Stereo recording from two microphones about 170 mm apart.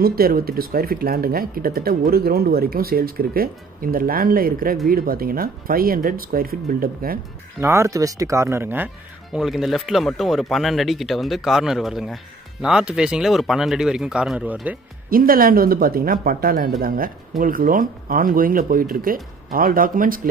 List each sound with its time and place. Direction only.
0.0 s speech: 60° right (ahead or behind)
7.6 s speech: 15° right (ahead or behind)
15.0 s speech: 60° right (ahead or behind)